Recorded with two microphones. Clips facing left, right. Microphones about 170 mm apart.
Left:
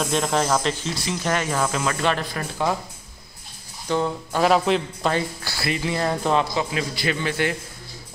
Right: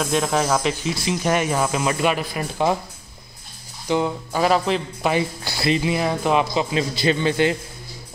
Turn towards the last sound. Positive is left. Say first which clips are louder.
# right 5 dB
turn(degrees=-25)  # may be behind; listen again after turning